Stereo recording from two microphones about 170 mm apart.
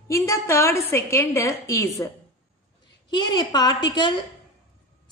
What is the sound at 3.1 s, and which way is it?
A woman's voice, 25° left (ahead or behind).